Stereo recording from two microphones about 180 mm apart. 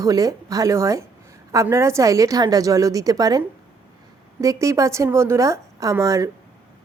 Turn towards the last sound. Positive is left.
turn(degrees=-20)  # may be behind; listen again after turning